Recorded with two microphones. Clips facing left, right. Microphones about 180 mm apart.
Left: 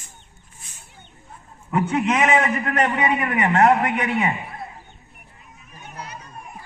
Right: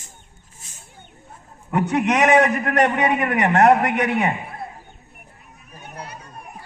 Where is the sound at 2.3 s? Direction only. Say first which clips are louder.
Right 4 dB; 65° right (ahead or behind).